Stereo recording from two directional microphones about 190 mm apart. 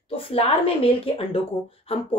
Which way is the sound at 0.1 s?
30° left (ahead or behind).